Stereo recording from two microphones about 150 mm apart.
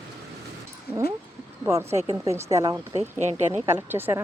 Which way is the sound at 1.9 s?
45° right (ahead or behind).